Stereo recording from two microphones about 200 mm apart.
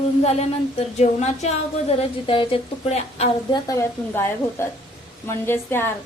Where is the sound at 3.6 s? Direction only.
15° left (ahead or behind).